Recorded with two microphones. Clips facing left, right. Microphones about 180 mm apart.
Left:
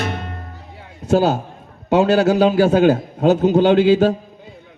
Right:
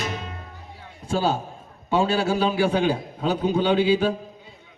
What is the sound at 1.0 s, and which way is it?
A man's voice, 45° left (ahead or behind).